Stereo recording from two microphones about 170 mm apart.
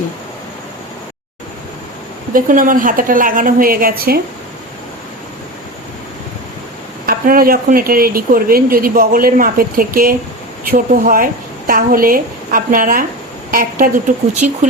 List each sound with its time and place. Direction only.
2.3 s a woman's voice: 55° right (ahead or behind)
7.0 s a woman's voice: 60° right (ahead or behind)